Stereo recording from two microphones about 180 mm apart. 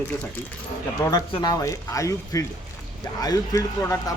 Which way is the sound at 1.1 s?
20° left (ahead or behind).